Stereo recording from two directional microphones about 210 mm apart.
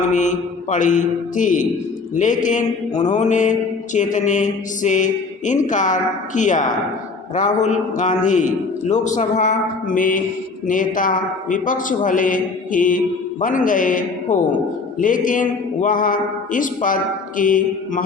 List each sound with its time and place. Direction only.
0.1 s mantra: 35° left (ahead or behind)